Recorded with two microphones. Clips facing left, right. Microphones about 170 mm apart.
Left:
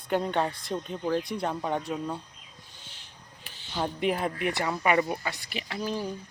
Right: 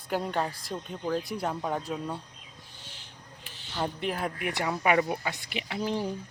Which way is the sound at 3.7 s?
5° left (ahead or behind).